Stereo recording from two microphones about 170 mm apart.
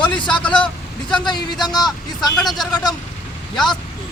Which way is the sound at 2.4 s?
Centre (ahead or behind).